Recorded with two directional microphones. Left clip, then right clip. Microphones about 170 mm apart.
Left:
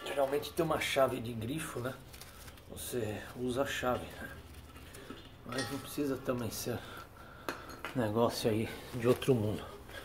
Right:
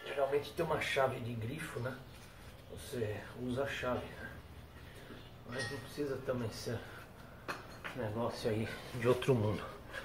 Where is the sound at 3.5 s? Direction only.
65° left (ahead or behind).